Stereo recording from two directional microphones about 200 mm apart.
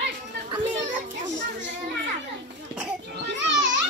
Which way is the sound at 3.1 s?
60° right (ahead or behind).